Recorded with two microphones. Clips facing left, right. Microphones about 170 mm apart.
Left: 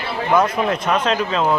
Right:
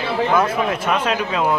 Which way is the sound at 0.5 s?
10° right (ahead or behind).